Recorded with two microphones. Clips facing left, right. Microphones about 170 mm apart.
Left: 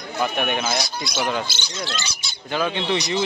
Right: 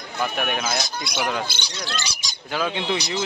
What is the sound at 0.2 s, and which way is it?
A man's voice, centre (ahead or behind).